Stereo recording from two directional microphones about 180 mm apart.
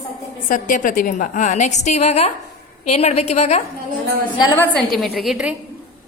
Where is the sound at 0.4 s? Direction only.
50° left (ahead or behind).